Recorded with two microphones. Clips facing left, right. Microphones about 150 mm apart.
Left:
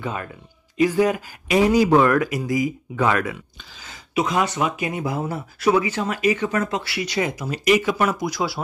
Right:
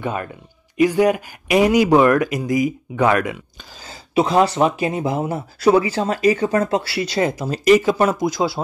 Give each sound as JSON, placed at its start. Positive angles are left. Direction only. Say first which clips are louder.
{"t": 0.0, "sound": "speech", "louder": "right 4 dB", "side_deg": -20}
{"t": 3.8, "sound": "speech", "louder": "right 5 dB", "side_deg": -30}